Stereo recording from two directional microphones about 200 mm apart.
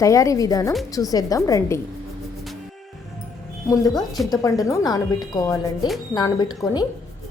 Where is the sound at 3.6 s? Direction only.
15° left (ahead or behind).